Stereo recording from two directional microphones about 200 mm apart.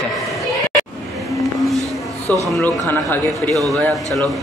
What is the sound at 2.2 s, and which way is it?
Speech, 15° right (ahead or behind).